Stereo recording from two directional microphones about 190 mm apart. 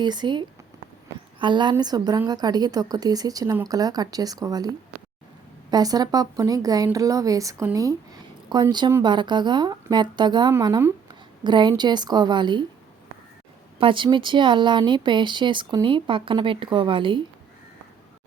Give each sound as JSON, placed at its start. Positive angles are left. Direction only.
{"t": 0.0, "sound": "speech", "side_deg": -25}
{"t": 5.7, "sound": "speech", "side_deg": -20}
{"t": 13.7, "sound": "speech", "side_deg": -25}